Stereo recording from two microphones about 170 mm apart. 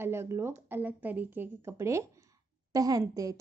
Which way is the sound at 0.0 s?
15° right (ahead or behind).